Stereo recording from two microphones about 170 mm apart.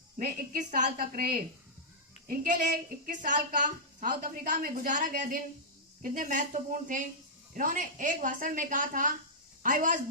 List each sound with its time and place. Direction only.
0.2 s a woman's voice: 60° right (ahead or behind)